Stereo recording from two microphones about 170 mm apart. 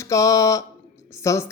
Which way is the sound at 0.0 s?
20° left (ahead or behind).